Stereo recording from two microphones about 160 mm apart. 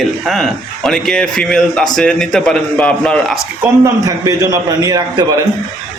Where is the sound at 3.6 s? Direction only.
20° right (ahead or behind).